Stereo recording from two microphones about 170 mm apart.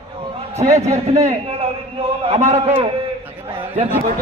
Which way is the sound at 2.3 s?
40° right (ahead or behind).